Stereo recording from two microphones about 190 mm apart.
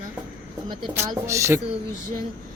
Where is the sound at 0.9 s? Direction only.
15° right (ahead or behind).